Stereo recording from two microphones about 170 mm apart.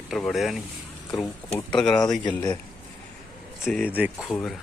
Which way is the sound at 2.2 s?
25° left (ahead or behind).